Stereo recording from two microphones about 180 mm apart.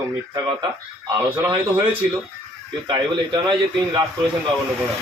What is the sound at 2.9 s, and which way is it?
A man's voice, 25° right (ahead or behind).